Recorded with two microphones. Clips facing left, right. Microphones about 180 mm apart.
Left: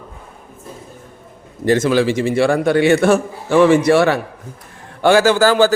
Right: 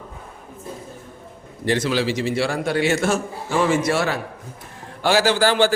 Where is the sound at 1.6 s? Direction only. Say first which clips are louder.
Left 6 dB; 45° left (ahead or behind); by 4.2 s 65° left (ahead or behind).